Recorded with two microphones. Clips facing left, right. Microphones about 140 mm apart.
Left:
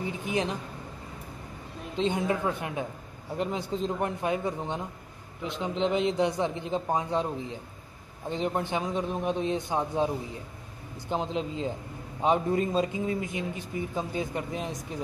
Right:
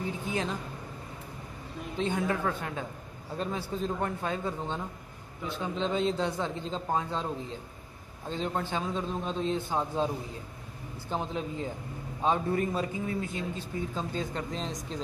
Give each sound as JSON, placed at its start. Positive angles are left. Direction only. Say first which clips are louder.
{"t": 0.2, "sound": "a man's voice", "louder": "left 5 dB", "side_deg": 15}
{"t": 2.0, "sound": "a man's voice", "louder": "left 3 dB", "side_deg": 20}